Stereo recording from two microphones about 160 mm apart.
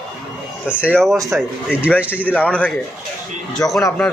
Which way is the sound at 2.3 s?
10° left (ahead or behind).